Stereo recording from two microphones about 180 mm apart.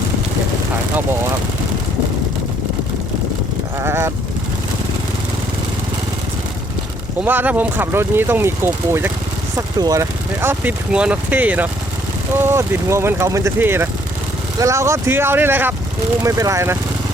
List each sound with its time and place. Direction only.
3.8 s sheep: 15° right (ahead or behind)
7.3 s speech: 10° right (ahead or behind)